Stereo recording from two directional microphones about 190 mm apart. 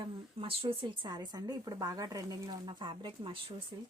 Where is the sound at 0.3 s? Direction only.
30° right (ahead or behind).